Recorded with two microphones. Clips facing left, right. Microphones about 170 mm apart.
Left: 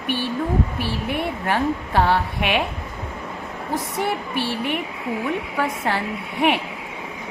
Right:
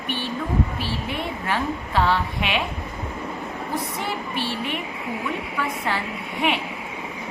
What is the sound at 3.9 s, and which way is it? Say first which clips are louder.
Speech: left 4 dB; 60° left (ahead or behind).